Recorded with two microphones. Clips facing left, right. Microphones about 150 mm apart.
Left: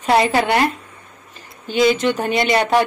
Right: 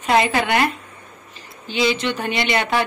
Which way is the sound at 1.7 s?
50° left (ahead or behind).